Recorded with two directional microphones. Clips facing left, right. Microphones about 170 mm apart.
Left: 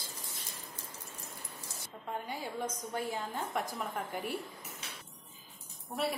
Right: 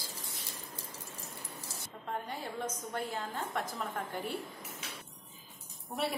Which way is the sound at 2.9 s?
15° left (ahead or behind).